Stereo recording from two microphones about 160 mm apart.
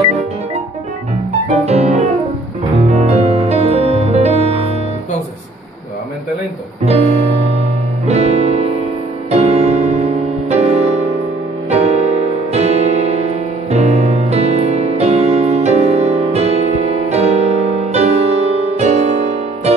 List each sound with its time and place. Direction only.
1.5 s music: 40° right (ahead or behind)
6.8 s music: 40° right (ahead or behind)